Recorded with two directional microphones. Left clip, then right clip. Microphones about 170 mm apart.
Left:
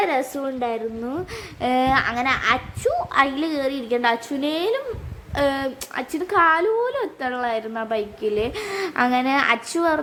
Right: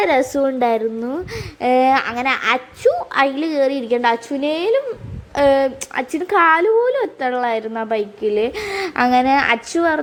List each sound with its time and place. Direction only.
0.0 s a woman's voice: 25° right (ahead or behind)
1.6 s speech: 10° right (ahead or behind)